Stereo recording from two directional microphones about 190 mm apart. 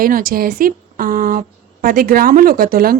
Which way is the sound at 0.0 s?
50° right (ahead or behind).